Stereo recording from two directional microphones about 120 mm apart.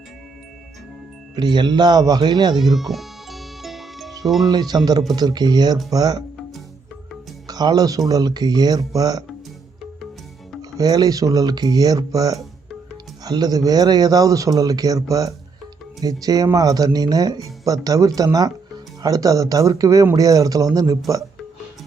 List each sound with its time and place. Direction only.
1.4 s speech: 40° right (ahead or behind)
2.7 s music: centre (ahead or behind)
4.4 s speech: 35° right (ahead or behind)
7.4 s speech: 35° right (ahead or behind)
10.6 s speech: 30° right (ahead or behind)